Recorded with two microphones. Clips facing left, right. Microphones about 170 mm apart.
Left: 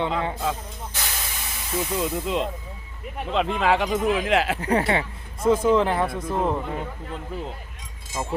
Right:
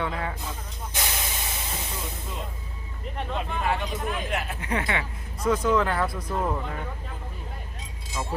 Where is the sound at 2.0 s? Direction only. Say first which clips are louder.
Left 11 dB; 90° left.